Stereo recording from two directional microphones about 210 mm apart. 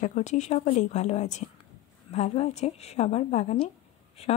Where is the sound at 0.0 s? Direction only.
35° left (ahead or behind).